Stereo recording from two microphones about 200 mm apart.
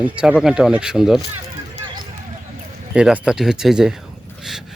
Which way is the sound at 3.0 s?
5° right (ahead or behind).